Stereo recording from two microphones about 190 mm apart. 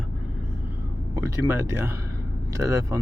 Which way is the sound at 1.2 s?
15° right (ahead or behind).